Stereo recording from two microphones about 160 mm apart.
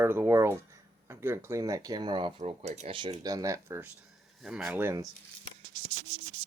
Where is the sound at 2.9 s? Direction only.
30° right (ahead or behind).